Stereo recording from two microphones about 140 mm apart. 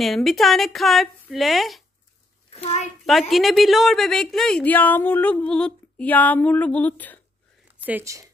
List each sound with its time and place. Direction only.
0.0 s a woman's voice: centre (ahead or behind)
2.5 s a child's voice: 50° left (ahead or behind)
3.1 s a woman's voice: centre (ahead or behind)
7.8 s speech: 10° right (ahead or behind)